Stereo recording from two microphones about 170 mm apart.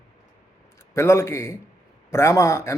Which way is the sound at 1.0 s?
15° left (ahead or behind).